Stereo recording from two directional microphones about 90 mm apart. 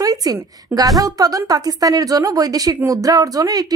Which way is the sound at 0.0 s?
45° right (ahead or behind).